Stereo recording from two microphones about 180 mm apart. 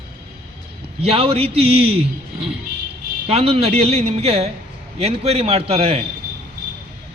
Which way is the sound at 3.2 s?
35° right (ahead or behind).